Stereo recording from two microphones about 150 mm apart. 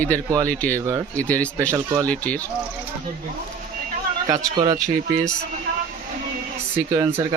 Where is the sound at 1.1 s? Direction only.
10° left (ahead or behind).